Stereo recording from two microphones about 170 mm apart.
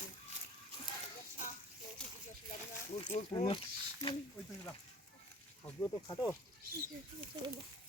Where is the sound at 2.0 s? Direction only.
5° left (ahead or behind).